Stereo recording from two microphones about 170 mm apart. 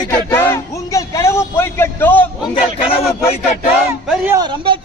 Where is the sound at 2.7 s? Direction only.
35° left (ahead or behind).